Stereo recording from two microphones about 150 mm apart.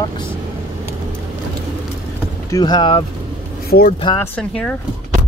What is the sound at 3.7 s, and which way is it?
Speech, 85° left.